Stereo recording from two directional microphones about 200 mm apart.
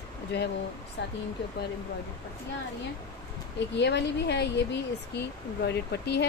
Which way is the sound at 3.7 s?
60° left (ahead or behind).